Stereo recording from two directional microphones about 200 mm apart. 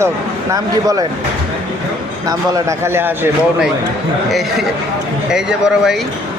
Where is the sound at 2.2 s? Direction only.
15° right (ahead or behind).